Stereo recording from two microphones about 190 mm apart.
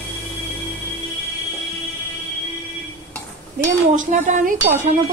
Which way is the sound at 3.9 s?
40° right (ahead or behind).